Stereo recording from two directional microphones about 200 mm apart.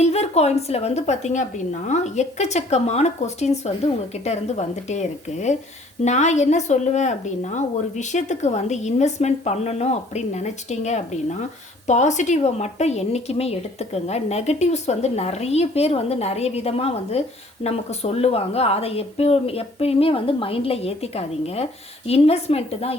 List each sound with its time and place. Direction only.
0.0 s a woman's voice: 30° left (ahead or behind)